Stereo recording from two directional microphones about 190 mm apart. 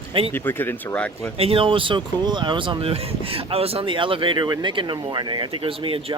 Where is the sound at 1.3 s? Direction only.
30° right (ahead or behind).